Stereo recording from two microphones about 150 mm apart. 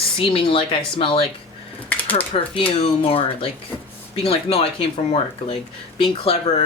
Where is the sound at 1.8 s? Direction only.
10° left (ahead or behind).